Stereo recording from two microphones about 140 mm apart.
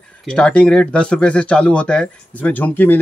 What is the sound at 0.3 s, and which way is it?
Speech, 5° left (ahead or behind).